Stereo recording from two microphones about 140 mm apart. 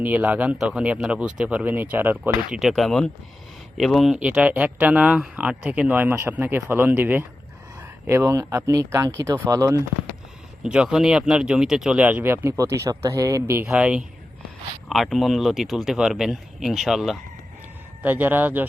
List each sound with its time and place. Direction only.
0.0 s speech: 10° right (ahead or behind)
2.6 s speech: centre (ahead or behind); by 9.8 s 25° right (ahead or behind)
10.6 s speech: 5° right (ahead or behind)
13.7 s speech: 5° right (ahead or behind)
18.0 s speech: 15° right (ahead or behind)